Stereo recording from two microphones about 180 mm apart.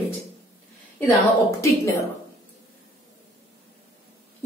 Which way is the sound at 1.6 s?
15° left (ahead or behind).